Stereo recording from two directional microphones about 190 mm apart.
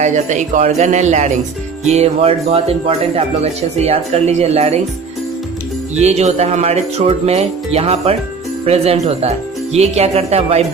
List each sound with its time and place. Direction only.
0.0 s speech: 40° right (ahead or behind)
6.0 s speech: 35° right (ahead or behind)